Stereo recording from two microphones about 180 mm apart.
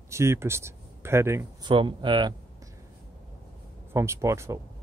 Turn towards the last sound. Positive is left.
turn(degrees=-15)  # may be behind; listen again after turning